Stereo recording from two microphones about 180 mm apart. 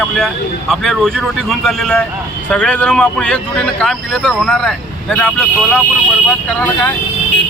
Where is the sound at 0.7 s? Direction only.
Centre (ahead or behind).